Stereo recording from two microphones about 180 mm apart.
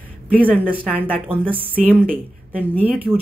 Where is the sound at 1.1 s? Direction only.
5° right (ahead or behind).